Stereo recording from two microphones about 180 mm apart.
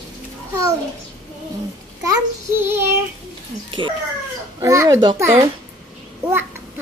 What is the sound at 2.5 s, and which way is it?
Speech, 10° right (ahead or behind).